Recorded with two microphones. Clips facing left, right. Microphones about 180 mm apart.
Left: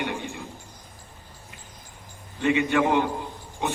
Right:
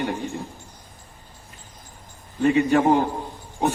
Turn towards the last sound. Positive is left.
turn(degrees=-35)  # may be behind; listen again after turning